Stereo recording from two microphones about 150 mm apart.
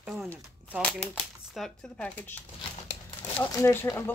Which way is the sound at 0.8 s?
5° left (ahead or behind).